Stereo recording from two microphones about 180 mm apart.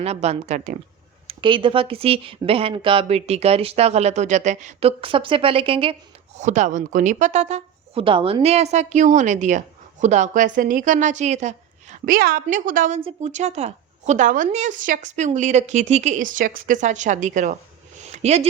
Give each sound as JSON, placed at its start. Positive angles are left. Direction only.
{"t": 0.0, "sound": "speech", "side_deg": -35}
{"t": 1.3, "sound": "speech", "side_deg": -25}
{"t": 13.0, "sound": "speech", "side_deg": -35}
{"t": 18.1, "sound": "a sound", "side_deg": -35}